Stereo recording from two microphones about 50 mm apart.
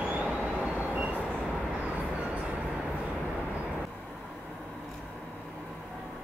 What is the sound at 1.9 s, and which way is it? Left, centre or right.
Vehicle, right.